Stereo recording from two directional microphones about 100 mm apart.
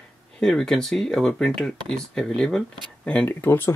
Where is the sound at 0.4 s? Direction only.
5° left (ahead or behind).